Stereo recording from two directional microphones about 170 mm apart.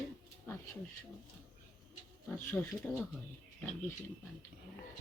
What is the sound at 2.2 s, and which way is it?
Speech, 10° left (ahead or behind).